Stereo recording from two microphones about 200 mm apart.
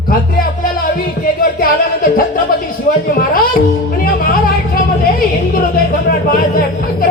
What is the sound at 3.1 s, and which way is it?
Speech, 45° left (ahead or behind).